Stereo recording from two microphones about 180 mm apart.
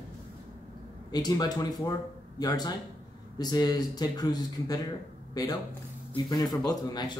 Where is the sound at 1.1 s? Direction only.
20° left (ahead or behind).